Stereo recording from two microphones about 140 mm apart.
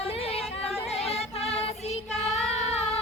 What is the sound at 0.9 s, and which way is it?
Choir, 45° left (ahead or behind).